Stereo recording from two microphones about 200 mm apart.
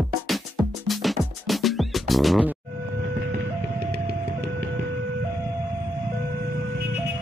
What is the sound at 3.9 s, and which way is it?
Vehicle, 55° right (ahead or behind).